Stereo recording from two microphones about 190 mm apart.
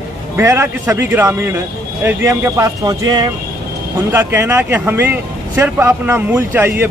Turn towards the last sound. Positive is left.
turn(degrees=-10)  # may be behind; listen again after turning